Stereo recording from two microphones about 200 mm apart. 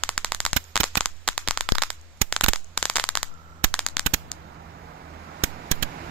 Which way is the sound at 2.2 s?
90° right.